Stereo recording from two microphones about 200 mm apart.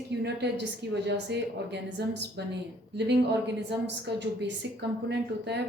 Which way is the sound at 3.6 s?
60° right (ahead or behind).